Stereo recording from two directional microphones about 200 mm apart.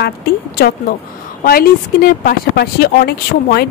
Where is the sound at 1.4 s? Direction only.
45° left (ahead or behind).